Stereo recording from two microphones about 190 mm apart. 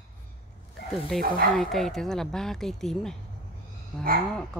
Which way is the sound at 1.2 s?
50° right (ahead or behind).